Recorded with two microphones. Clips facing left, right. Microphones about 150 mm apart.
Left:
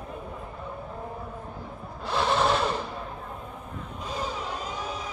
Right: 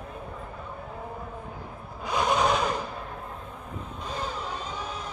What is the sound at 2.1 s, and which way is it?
Vehicle, 5° right (ahead or behind).